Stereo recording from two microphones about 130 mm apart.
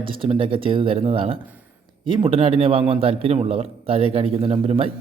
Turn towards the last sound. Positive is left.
turn(degrees=-50)  # may be behind; listen again after turning